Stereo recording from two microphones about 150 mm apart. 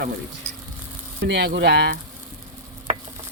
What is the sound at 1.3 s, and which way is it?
Speech, 90° right.